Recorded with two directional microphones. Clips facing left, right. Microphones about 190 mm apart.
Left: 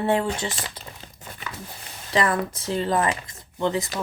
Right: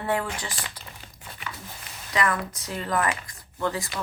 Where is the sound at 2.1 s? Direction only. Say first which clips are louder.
Left 4 dB; 30° left (ahead or behind).